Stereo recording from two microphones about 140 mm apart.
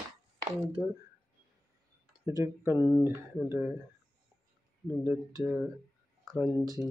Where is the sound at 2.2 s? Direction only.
20° right (ahead or behind).